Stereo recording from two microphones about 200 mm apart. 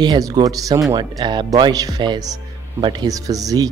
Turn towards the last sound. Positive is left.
turn(degrees=-20)  # may be behind; listen again after turning